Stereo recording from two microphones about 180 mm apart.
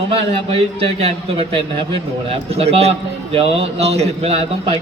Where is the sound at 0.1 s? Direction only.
30° right (ahead or behind).